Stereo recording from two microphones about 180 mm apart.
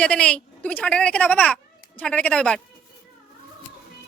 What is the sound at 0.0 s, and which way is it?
A man's voice, 5° left (ahead or behind).